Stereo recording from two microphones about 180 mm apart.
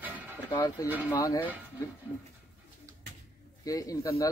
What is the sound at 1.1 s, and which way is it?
Speech, 15° left (ahead or behind).